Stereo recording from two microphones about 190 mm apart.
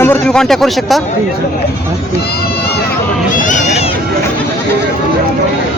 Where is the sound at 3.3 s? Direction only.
45° left (ahead or behind).